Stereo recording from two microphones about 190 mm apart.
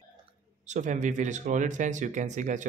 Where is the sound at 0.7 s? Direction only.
40° right (ahead or behind).